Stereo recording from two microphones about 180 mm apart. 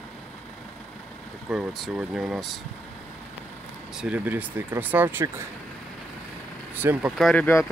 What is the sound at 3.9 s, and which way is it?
Speech, 10° right (ahead or behind).